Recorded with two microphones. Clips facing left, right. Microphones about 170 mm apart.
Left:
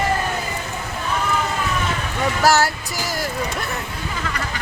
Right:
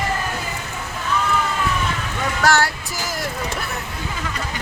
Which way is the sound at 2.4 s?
5° left (ahead or behind).